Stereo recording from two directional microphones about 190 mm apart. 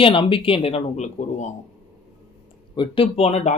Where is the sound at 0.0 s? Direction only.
25° left (ahead or behind).